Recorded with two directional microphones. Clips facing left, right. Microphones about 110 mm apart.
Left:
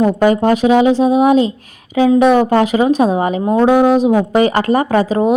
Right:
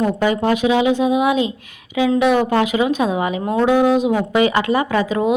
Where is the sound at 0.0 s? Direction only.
40° left (ahead or behind).